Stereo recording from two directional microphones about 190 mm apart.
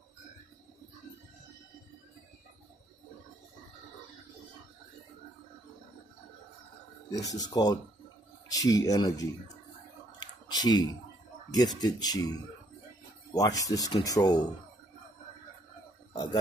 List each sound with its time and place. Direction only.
7.1 s speech: 20° left (ahead or behind)
10.1 s a sound: 20° left (ahead or behind)
11.5 s speech: 20° left (ahead or behind)